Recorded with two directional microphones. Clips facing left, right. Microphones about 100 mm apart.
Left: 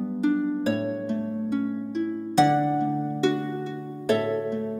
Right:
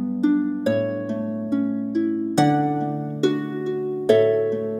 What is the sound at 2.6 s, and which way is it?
Music, 30° right (ahead or behind).